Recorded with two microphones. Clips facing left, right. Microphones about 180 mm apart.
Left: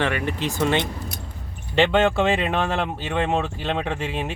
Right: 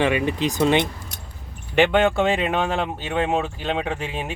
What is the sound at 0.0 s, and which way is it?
Speech, 15° right (ahead or behind).